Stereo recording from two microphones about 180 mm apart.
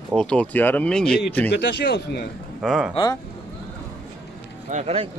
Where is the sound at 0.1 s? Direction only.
5° left (ahead or behind).